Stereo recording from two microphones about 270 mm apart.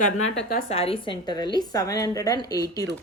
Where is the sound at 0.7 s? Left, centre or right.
Left.